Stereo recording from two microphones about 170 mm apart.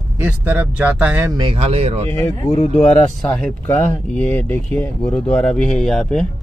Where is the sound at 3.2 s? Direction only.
5° left (ahead or behind).